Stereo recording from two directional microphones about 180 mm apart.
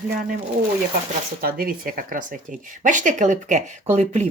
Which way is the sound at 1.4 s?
55° right (ahead or behind).